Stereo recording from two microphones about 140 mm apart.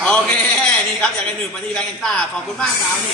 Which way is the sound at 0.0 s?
5° left (ahead or behind).